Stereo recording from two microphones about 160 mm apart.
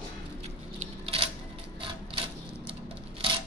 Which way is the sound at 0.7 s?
35° right (ahead or behind).